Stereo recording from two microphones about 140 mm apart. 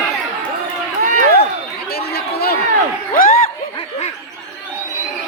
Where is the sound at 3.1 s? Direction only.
90° left.